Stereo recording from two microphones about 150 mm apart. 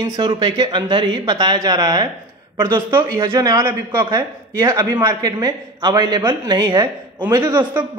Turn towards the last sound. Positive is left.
turn(degrees=-25)  # may be behind; listen again after turning